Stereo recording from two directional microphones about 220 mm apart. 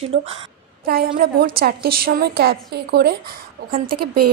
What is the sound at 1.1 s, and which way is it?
A woman's voice, 45° right (ahead or behind).